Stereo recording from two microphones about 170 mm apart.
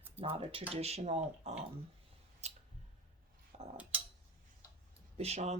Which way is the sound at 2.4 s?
40° right (ahead or behind).